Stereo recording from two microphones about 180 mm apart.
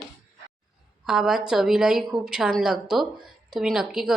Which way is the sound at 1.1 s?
5° right (ahead or behind).